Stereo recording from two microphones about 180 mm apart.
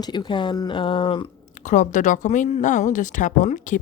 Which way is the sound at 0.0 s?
25° left (ahead or behind).